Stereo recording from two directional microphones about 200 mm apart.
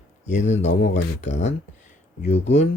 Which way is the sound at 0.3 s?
35° left (ahead or behind).